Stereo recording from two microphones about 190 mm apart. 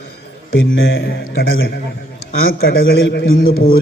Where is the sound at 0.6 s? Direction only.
85° left.